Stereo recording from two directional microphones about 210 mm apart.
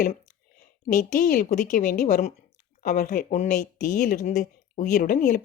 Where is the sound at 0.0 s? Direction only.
35° left (ahead or behind).